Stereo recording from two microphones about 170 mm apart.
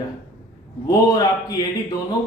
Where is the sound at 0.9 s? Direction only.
20° left (ahead or behind).